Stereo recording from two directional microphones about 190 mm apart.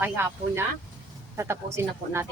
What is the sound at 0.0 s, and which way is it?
Speech, 15° right (ahead or behind).